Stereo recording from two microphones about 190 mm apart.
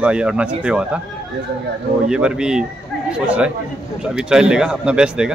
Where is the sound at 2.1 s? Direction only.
5° right (ahead or behind).